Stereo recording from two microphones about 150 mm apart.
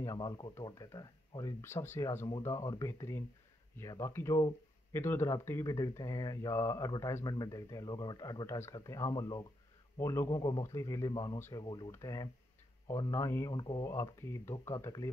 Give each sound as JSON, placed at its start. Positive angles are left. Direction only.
{"t": 0.0, "sound": "speech", "side_deg": 25}